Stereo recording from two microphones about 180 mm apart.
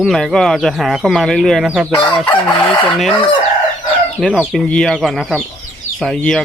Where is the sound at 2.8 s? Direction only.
5° left (ahead or behind).